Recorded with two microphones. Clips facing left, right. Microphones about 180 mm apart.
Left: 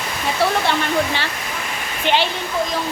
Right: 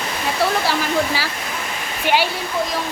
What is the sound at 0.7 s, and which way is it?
Speech, 5° right (ahead or behind).